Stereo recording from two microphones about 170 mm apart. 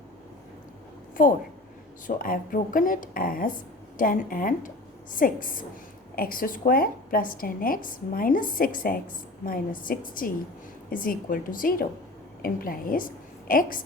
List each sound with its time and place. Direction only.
1.1 s a woman's voice: 55° left (ahead or behind)